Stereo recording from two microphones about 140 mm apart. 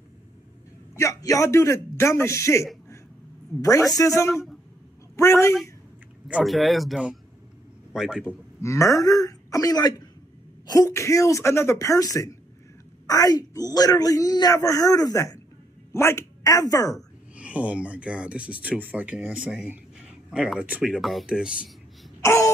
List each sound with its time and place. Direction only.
0.9 s speech: 25° left (ahead or behind)
6.2 s speech: 5° right (ahead or behind)
8.5 s speech: 20° left (ahead or behind)
16.9 s speech: 10° right (ahead or behind)
22.2 s throat clearing: 20° left (ahead or behind)